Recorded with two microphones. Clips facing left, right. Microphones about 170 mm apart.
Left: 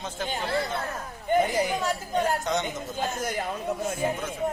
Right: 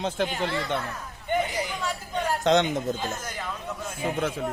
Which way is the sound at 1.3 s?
50° left (ahead or behind).